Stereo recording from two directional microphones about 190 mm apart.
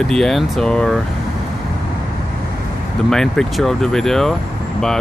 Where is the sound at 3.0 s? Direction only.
5° left (ahead or behind).